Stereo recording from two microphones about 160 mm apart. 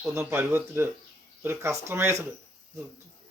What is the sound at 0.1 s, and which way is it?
Speech, 15° right (ahead or behind).